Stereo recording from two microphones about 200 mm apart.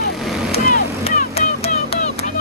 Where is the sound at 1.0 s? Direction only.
30° left (ahead or behind).